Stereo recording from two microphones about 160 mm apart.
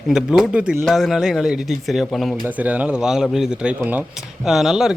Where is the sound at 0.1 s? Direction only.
5° right (ahead or behind).